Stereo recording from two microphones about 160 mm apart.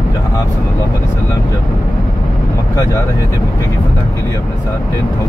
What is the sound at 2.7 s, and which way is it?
Speech, 20° left (ahead or behind).